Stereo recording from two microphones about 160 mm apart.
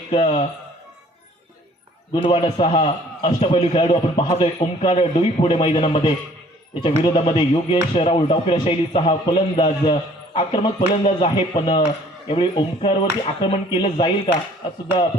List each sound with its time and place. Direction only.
0.1 s speech: 40° left (ahead or behind)
2.1 s speech: 35° left (ahead or behind)